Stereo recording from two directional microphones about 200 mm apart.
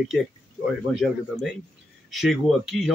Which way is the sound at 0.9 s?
Centre (ahead or behind).